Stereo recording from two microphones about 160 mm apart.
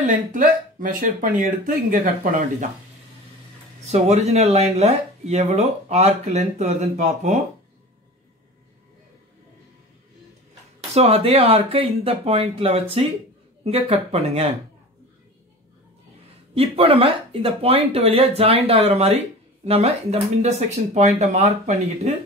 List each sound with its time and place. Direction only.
0.0 s speech: 55° right (ahead or behind)
3.8 s speech: 45° right (ahead or behind)
11.0 s speech: 40° right (ahead or behind)
16.5 s speech: 35° right (ahead or behind)